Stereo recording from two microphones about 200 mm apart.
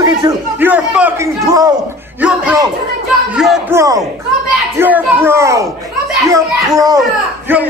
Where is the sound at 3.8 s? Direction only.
15° right (ahead or behind).